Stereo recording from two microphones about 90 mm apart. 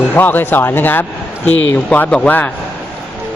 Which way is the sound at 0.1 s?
20° left (ahead or behind).